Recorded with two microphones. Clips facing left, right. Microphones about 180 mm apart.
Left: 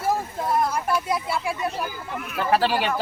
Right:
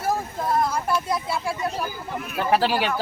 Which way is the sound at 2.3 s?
10° right (ahead or behind).